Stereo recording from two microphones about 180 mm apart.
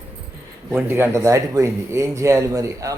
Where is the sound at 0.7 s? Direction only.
10° right (ahead or behind).